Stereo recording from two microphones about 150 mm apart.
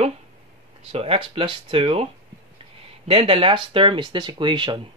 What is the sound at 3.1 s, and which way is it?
Speech, 35° right (ahead or behind).